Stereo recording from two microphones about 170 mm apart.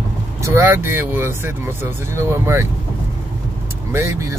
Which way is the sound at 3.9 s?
15° right (ahead or behind).